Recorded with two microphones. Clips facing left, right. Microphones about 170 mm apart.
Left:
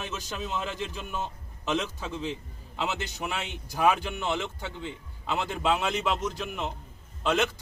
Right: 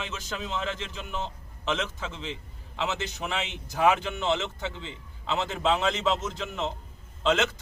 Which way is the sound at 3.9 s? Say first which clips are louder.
Right 2 dB; 10° left (ahead or behind).